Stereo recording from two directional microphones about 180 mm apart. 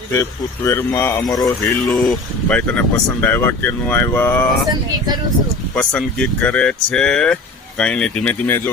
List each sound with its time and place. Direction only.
0.1 s speech: 15° left (ahead or behind)
1.9 s speech: 5° left (ahead or behind)
5.7 s speech: 5° left (ahead or behind)